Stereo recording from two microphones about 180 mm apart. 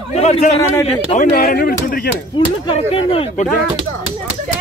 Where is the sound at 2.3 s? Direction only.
30° left (ahead or behind).